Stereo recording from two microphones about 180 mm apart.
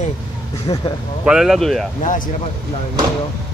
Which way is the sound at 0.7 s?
25° left (ahead or behind).